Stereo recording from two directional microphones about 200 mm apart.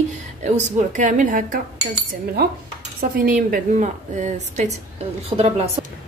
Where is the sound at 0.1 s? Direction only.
35° right (ahead or behind).